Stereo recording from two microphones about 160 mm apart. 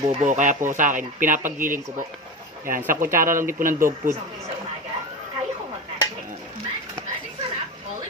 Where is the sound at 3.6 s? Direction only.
60° right (ahead or behind).